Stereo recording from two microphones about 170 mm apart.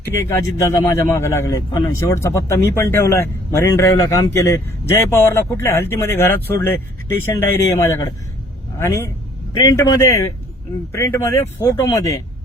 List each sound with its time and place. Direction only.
0.0 s speech: 15° left (ahead or behind)